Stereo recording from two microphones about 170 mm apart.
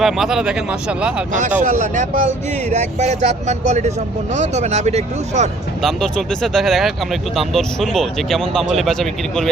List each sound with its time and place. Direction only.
0.0 s speech: centre (ahead or behind)
1.3 s speech: 50° right (ahead or behind)
5.8 s speech: centre (ahead or behind)